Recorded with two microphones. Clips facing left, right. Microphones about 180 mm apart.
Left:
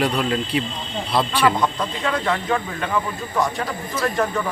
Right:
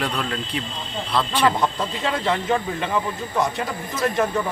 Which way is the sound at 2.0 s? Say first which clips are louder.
Even; 20° right (ahead or behind).